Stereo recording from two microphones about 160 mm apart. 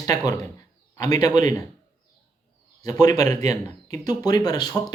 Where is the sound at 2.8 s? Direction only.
25° left (ahead or behind).